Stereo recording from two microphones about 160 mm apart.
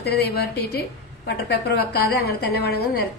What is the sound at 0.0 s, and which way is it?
A woman's voice, 85° left.